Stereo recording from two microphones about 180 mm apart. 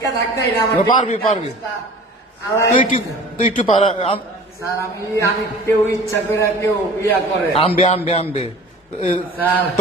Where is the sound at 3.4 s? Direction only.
35° left (ahead or behind).